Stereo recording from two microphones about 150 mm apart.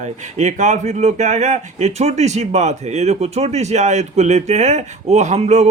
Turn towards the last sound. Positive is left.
turn(degrees=-50)  # may be behind; listen again after turning